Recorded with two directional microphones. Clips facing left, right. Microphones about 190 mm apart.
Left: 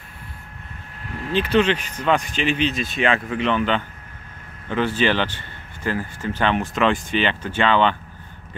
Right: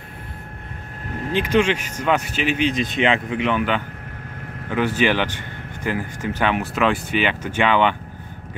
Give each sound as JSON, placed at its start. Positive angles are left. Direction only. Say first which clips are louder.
{"t": 1.3, "sound": "speech", "louder": "even", "side_deg": -10}